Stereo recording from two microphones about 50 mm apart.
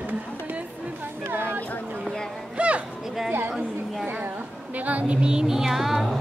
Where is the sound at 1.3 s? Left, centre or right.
Right.